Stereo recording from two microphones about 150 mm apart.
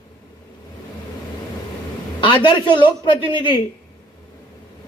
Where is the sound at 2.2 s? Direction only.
35° left (ahead or behind).